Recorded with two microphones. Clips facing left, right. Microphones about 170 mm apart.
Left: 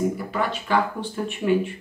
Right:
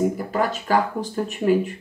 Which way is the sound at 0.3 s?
40° right (ahead or behind).